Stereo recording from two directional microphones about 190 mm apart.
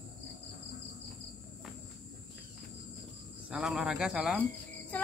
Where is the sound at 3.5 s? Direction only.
5° right (ahead or behind).